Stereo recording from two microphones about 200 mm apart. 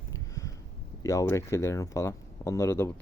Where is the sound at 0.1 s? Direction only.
15° left (ahead or behind).